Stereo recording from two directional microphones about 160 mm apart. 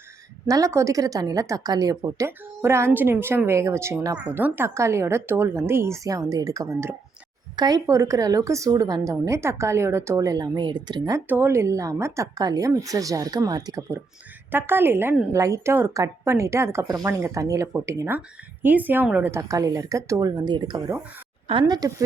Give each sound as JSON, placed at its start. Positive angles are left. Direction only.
{"t": 0.4, "sound": "a woman's voice", "side_deg": -20}
{"t": 11.3, "sound": "a woman's voice", "side_deg": -15}